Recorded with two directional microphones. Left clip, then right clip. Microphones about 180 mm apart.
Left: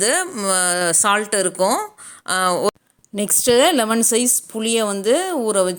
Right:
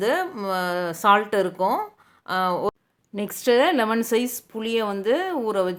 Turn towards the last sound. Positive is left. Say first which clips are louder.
# left 5 dB
turn(degrees=20)  # may be behind; listen again after turning